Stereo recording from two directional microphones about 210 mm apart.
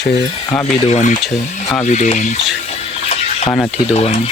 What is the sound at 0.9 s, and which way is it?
Speech, 35° left (ahead or behind).